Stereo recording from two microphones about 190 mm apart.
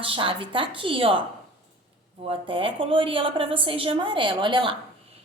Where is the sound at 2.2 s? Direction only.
30° right (ahead or behind).